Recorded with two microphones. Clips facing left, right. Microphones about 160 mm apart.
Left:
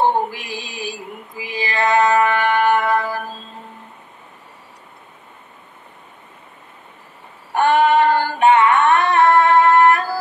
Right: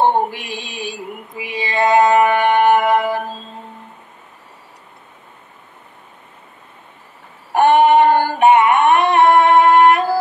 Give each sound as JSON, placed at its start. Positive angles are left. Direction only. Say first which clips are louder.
{"t": 0.0, "sound": "mantra", "louder": "right 2 dB", "side_deg": -20}
{"t": 1.4, "sound": "music", "louder": "right 3 dB", "side_deg": -20}
{"t": 7.5, "sound": "singing", "louder": "right 3 dB", "side_deg": -15}